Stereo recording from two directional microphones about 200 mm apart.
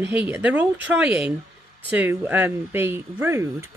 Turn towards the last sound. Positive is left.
turn(degrees=-15)  # may be behind; listen again after turning